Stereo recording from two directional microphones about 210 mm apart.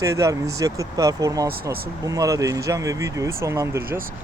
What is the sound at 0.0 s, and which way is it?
Speech, 15° right (ahead or behind).